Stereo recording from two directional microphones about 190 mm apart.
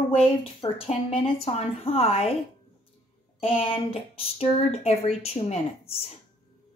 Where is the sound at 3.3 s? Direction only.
30° left (ahead or behind).